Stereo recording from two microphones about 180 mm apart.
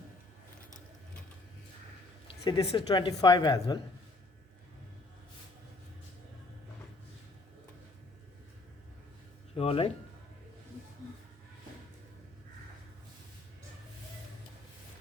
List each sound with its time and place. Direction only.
2.2 s a woman's voice: 25° left (ahead or behind)
9.6 s speech: 30° left (ahead or behind)